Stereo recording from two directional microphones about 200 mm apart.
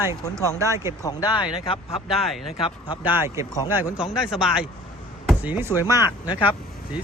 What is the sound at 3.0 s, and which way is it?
Speech, 10° right (ahead or behind).